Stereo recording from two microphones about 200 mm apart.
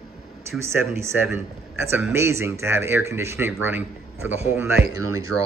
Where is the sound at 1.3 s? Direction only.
10° right (ahead or behind).